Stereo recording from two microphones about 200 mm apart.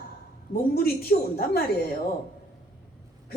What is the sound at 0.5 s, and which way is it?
A woman's voice, 50° left (ahead or behind).